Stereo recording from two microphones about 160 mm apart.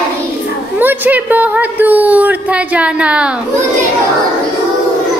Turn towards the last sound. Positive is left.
turn(degrees=-5)  # may be behind; listen again after turning